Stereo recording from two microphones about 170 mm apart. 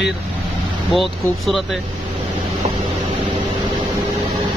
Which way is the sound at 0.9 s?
Centre (ahead or behind).